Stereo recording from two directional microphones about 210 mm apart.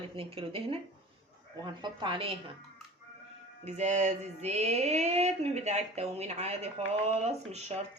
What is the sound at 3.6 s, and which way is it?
Mantra, 35° right (ahead or behind).